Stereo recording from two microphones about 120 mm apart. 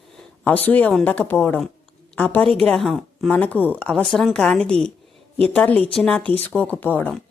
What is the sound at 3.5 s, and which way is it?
Speech, 15° right (ahead or behind).